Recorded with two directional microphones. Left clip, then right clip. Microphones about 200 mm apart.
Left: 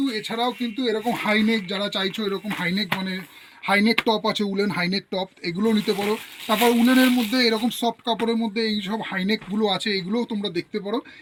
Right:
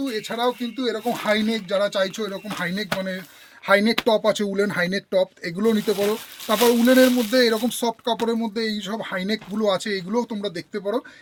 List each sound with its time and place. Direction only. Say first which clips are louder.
0.0 s speech: right 1 dB; 40° right (ahead or behind)
3.7 s speech: right 2 dB; 40° right (ahead or behind)